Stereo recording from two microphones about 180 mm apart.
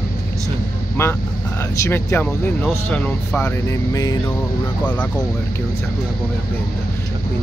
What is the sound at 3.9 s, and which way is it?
Vehicle, 20° left (ahead or behind).